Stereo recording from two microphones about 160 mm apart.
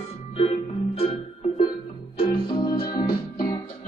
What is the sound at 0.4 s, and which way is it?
Music, 40° left (ahead or behind).